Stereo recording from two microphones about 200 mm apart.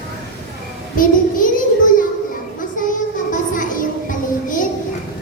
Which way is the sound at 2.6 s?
40° left (ahead or behind).